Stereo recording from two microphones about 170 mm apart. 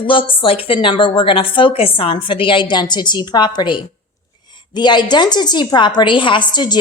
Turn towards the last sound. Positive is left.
turn(degrees=25)  # may be behind; listen again after turning